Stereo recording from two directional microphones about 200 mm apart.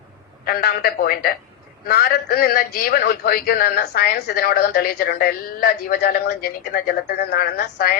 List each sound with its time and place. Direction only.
0.4 s a man's voice: 50° left (ahead or behind)